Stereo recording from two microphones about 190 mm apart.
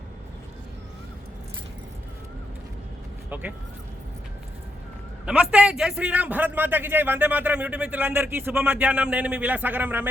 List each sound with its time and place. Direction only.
3.2 s speech: 10° right (ahead or behind)
5.2 s a man's voice: 5° right (ahead or behind)